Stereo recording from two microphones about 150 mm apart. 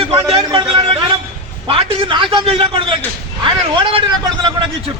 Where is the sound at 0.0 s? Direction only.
40° right (ahead or behind).